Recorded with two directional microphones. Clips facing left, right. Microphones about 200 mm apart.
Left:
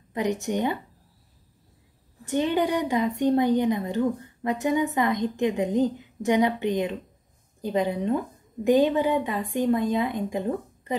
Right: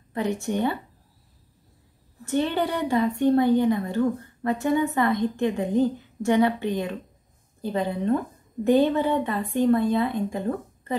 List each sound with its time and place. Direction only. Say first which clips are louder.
0.1 s a woman's voice: even; 15° left (ahead or behind)
2.2 s a woman's voice: left 1 dB; 15° left (ahead or behind)